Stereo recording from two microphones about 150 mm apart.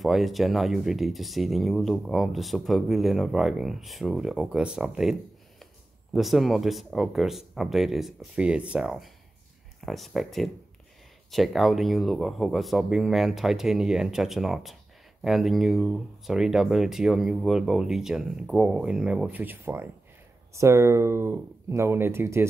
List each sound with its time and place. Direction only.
0.0 s speech: centre (ahead or behind)
6.1 s speech: centre (ahead or behind); by 22.5 s 15° right (ahead or behind)